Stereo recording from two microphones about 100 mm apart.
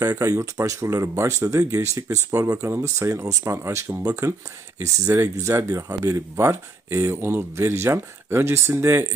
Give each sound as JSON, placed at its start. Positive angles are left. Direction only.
{"t": 0.0, "sound": "speech", "side_deg": -35}